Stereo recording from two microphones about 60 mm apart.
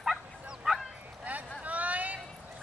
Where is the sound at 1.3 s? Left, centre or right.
Right.